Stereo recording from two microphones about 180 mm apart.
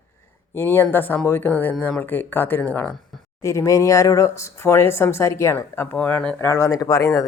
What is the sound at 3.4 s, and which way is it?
Speech, 15° left (ahead or behind).